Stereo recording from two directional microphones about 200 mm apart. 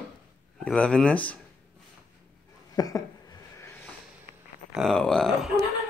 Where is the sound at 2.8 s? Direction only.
20° left (ahead or behind).